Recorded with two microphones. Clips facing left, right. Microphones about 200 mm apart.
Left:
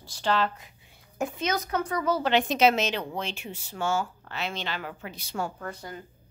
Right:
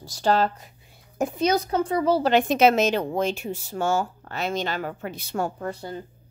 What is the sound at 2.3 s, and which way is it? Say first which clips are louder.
A woman's voice: right 3 dB; 50° right (ahead or behind).